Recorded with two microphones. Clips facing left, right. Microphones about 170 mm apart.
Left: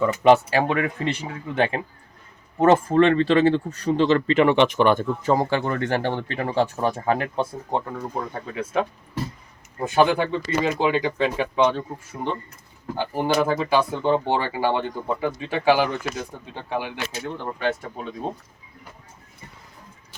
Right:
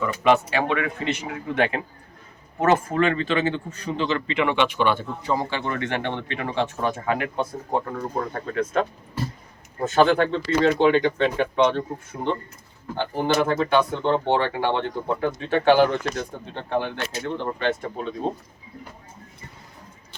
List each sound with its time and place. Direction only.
0.0 s speech: 35° left (ahead or behind)
7.9 s speech: 10° left (ahead or behind)
13.0 s speech: 10° left (ahead or behind)